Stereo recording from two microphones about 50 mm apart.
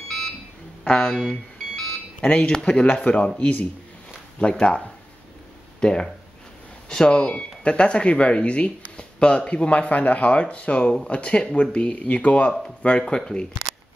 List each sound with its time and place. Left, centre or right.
0.8 s speech: centre
1.1 s a sound: centre
2.5 s speech: centre
4.4 s speech: left